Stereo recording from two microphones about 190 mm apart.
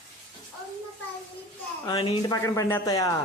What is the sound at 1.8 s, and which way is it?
Speech, 30° left (ahead or behind).